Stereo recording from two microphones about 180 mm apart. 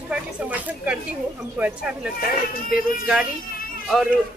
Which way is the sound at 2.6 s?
50° left (ahead or behind).